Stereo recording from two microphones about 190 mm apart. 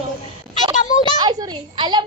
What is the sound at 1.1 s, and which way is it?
Speech, 20° right (ahead or behind).